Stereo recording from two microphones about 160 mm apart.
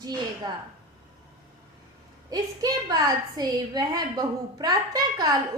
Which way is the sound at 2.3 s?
25° right (ahead or behind).